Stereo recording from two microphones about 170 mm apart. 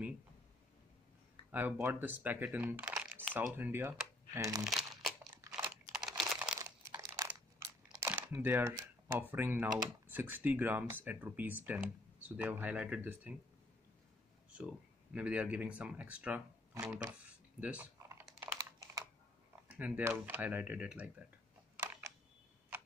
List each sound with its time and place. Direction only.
1.5 s speech: 10° right (ahead or behind)
4.6 s crumpling: centre (ahead or behind)
5.9 s computer keyboard: 5° right (ahead or behind)
6.6 s crumpling: 15° right (ahead or behind)
8.1 s speech: 15° right (ahead or behind)
15.1 s speech: 5° right (ahead or behind)
17.6 s typing: 10° right (ahead or behind)
18.6 s computer keyboard: 20° right (ahead or behind)
19.7 s speech: 10° right (ahead or behind)
21.7 s computer keyboard: 15° right (ahead or behind)